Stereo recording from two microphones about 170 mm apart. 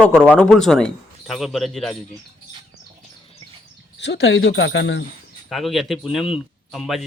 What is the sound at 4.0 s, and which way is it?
Speech, 90° left.